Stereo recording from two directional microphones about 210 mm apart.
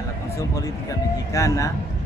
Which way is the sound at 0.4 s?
15° left (ahead or behind).